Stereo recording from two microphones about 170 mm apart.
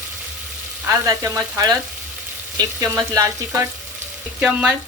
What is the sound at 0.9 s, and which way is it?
Speech, 15° right (ahead or behind).